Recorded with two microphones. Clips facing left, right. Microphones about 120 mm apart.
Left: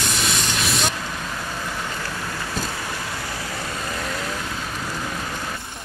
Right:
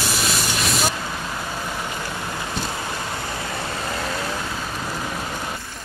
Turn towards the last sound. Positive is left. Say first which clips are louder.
# right 2 dB
turn(degrees=-30)  # may be behind; listen again after turning